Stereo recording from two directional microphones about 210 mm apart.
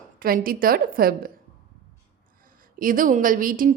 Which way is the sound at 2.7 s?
40° right (ahead or behind).